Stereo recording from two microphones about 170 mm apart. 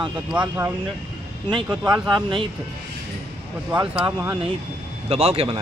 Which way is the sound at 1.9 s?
25° right (ahead or behind).